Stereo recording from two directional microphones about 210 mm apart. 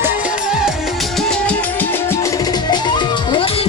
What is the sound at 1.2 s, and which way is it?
Music, 5° left (ahead or behind).